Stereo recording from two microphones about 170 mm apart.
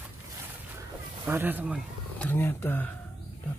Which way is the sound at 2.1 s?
10° left (ahead or behind).